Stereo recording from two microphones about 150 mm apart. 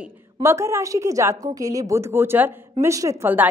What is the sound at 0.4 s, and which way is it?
A woman's voice, 20° right (ahead or behind).